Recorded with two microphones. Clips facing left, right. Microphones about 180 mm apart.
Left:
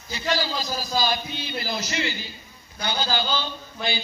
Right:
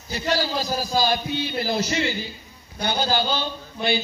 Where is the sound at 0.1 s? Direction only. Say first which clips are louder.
Right 2 dB; 55° right (ahead or behind).